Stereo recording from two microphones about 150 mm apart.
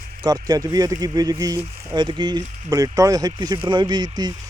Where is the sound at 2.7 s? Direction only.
20° right (ahead or behind).